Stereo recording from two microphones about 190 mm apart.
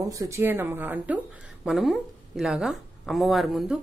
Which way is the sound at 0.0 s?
15° right (ahead or behind).